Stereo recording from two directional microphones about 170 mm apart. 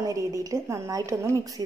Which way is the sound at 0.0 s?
20° right (ahead or behind).